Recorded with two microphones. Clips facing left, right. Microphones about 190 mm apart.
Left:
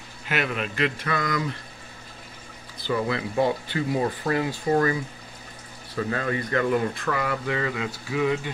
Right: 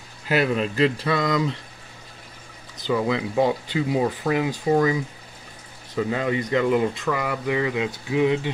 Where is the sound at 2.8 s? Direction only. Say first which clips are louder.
Right 3 dB; 15° right (ahead or behind).